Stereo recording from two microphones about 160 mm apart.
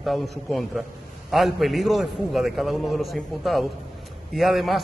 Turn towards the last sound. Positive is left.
turn(degrees=0)  # may be behind; listen again after turning